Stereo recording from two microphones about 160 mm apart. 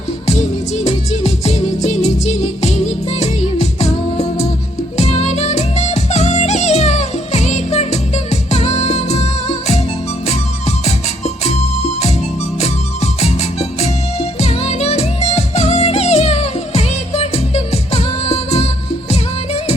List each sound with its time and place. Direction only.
0.9 s music: 40° left (ahead or behind)
13.2 s music: 40° left (ahead or behind)